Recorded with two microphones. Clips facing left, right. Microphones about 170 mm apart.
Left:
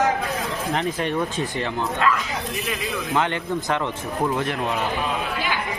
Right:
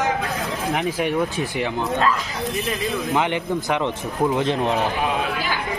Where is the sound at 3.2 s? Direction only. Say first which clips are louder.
Even; 15° right (ahead or behind).